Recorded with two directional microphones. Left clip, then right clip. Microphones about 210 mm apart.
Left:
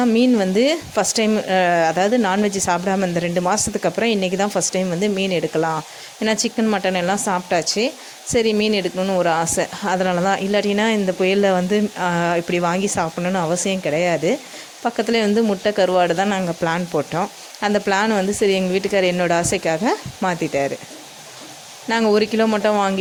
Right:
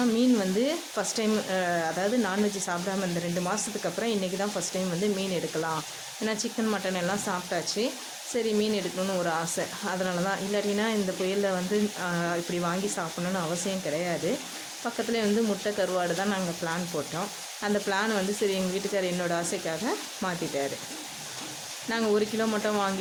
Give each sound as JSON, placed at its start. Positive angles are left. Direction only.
{"t": 0.0, "sound": "speech", "side_deg": 30}
{"t": 21.8, "sound": "speech", "side_deg": 30}